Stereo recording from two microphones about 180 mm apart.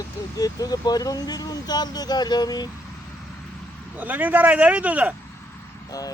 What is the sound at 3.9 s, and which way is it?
A man's voice, 10° right (ahead or behind).